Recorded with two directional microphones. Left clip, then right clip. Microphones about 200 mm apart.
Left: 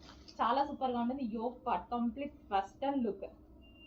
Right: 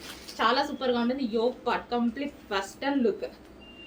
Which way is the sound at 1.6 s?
30° right (ahead or behind).